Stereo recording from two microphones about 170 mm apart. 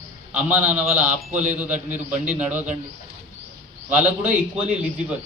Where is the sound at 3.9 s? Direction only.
10° right (ahead or behind).